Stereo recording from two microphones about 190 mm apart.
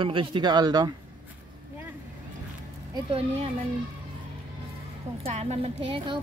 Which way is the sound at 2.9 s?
30° right (ahead or behind).